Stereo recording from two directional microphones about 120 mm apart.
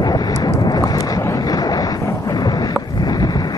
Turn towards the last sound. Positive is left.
turn(degrees=35)  # may be behind; listen again after turning